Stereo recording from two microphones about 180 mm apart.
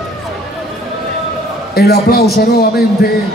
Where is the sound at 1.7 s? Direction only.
60° left (ahead or behind).